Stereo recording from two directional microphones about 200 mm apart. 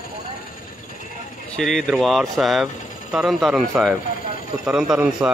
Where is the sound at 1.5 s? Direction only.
Centre (ahead or behind).